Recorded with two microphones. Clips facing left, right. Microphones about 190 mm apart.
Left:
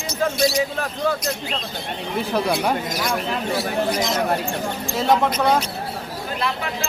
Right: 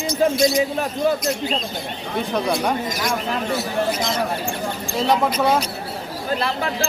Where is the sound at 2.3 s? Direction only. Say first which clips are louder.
Even; 5° left (ahead or behind).